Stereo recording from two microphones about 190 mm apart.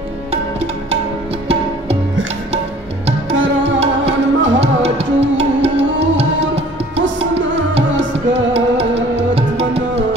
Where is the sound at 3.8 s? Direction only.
35° right (ahead or behind).